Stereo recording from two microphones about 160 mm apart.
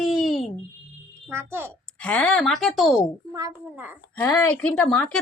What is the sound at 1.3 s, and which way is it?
Speech, 15° right (ahead or behind).